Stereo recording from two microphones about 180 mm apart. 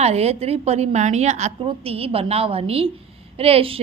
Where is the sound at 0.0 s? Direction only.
35° right (ahead or behind).